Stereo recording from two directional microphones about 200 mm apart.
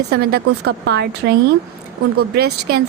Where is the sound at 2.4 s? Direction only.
55° right (ahead or behind).